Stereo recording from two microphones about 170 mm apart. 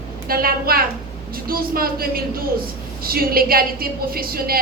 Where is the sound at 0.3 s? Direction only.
60° right (ahead or behind).